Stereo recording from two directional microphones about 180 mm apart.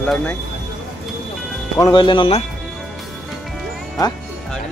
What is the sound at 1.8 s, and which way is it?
Speech, 25° left (ahead or behind).